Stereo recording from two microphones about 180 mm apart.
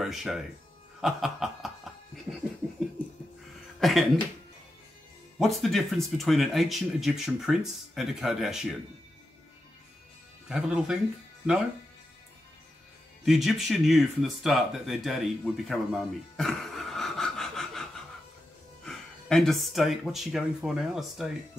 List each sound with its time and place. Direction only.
0.0 s speech: centre (ahead or behind)
1.0 s snicker: centre (ahead or behind)
3.8 s speech: centre (ahead or behind)
5.4 s speech: centre (ahead or behind)
10.5 s speech: 5° right (ahead or behind)
13.2 s speech: centre (ahead or behind)
18.9 s speech: 5° left (ahead or behind)